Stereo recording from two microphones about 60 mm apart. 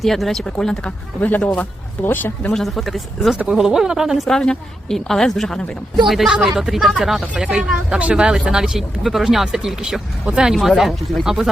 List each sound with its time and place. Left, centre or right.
0.0 s a woman's voice: centre
2.0 s speech: left
2.5 s speech: centre
4.3 s a woman's voice: centre
6.1 s speech: centre